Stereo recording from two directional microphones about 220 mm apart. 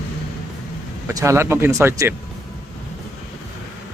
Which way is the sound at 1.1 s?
10° right (ahead or behind).